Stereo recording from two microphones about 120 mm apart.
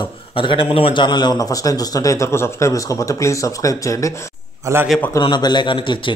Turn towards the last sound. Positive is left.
turn(degrees=45)  # may be behind; listen again after turning